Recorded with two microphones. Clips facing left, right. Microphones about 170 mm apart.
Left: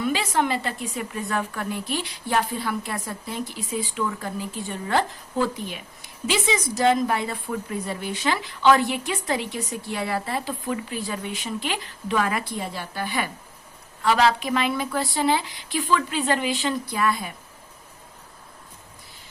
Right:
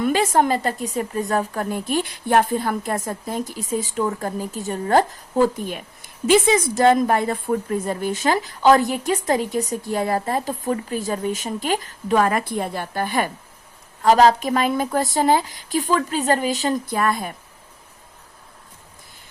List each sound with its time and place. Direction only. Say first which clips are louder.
0.0 s a woman's voice: right 5 dB; 50° right (ahead or behind)